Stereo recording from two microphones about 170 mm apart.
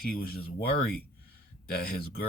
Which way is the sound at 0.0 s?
60° left (ahead or behind).